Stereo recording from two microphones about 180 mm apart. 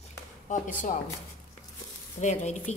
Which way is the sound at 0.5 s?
45° left (ahead or behind).